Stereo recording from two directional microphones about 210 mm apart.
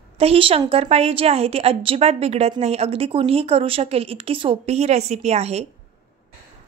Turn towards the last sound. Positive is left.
turn(degrees=-30)  # may be behind; listen again after turning